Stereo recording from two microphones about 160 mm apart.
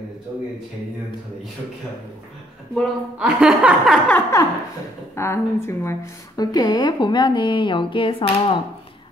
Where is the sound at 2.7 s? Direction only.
Centre (ahead or behind).